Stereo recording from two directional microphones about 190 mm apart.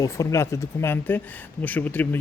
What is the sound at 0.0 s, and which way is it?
Speech, 15° left (ahead or behind).